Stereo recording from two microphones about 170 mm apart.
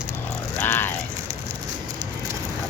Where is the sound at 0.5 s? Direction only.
10° left (ahead or behind).